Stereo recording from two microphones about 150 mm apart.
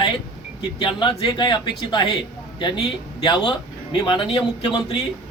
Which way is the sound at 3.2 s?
30° left (ahead or behind).